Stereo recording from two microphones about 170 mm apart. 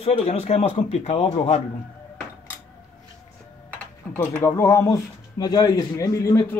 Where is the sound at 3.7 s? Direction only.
10° left (ahead or behind).